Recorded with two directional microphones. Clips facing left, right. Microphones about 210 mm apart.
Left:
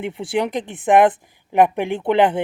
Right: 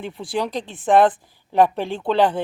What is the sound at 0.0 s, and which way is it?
Speech, 25° left (ahead or behind).